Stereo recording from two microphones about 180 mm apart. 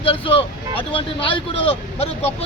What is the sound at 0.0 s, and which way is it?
Speech, 30° left (ahead or behind).